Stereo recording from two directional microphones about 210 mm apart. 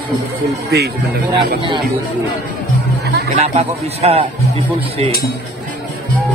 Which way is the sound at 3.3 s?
30° right (ahead or behind).